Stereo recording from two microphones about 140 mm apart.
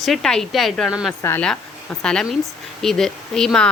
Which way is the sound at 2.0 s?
5° left (ahead or behind).